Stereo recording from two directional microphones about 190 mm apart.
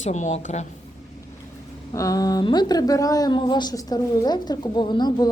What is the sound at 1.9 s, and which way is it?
Speech, 15° left (ahead or behind).